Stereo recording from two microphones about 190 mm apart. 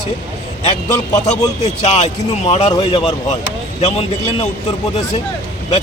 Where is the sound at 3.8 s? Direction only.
30° left (ahead or behind).